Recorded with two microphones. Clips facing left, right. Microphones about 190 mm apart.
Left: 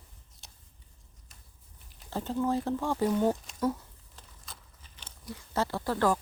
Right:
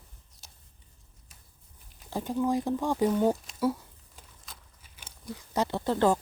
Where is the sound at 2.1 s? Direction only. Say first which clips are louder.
Right 2 dB; 15° right (ahead or behind).